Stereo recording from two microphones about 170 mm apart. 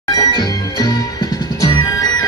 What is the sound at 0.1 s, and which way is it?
Music, 25° left (ahead or behind).